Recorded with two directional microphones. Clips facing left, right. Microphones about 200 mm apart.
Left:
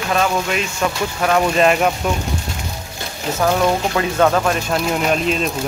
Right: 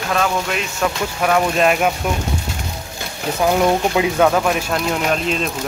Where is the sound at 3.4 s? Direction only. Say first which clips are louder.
Right 1 dB; 15° right (ahead or behind).